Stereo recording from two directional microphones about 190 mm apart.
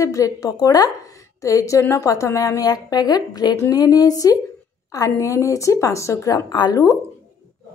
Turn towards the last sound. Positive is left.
turn(degrees=20)  # may be behind; listen again after turning